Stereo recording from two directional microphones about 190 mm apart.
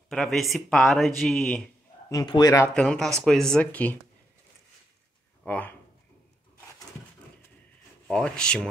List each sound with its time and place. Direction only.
0.1 s speech: 5° left (ahead or behind)
2.0 s speech: 20° left (ahead or behind)
2.7 s speech: 5° left (ahead or behind)
5.4 s speech: 10° left (ahead or behind)
8.1 s speech: 5° left (ahead or behind)